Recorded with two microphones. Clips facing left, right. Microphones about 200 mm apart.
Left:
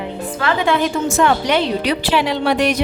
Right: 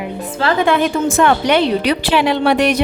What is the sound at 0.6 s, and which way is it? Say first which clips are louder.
A woman's voice: right 2 dB; 55° right (ahead or behind).